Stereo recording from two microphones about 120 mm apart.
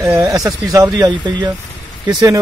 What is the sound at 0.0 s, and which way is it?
A man's voice, 25° right (ahead or behind).